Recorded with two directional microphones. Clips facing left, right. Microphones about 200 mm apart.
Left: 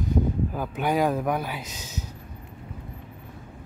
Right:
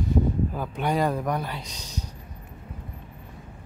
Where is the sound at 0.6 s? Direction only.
5° left (ahead or behind).